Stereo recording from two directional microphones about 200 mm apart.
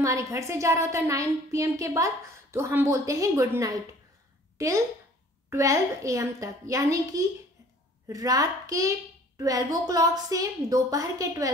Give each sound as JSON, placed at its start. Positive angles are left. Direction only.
{"t": 0.0, "sound": "a woman's voice", "side_deg": -15}